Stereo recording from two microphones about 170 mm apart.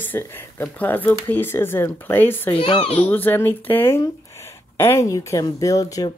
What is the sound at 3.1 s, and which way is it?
Speech, 10° left (ahead or behind).